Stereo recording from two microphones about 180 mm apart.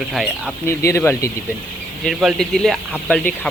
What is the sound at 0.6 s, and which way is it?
Speech, 15° left (ahead or behind).